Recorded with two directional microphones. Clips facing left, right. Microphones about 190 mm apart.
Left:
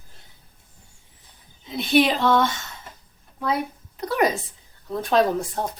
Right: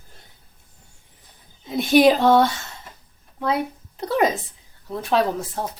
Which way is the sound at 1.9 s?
45° right (ahead or behind).